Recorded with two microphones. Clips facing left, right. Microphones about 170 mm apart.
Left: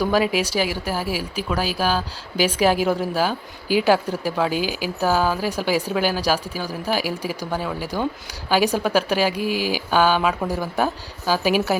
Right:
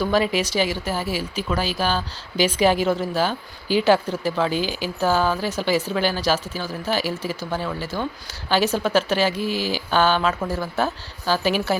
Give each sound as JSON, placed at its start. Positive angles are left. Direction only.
{"t": 0.0, "sound": "speech", "side_deg": 10}